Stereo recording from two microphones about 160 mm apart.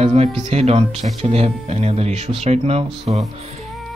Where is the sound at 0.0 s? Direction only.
40° right (ahead or behind).